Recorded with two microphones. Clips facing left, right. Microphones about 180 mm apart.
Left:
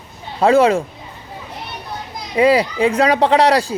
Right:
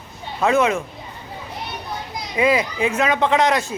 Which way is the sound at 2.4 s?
35° left (ahead or behind).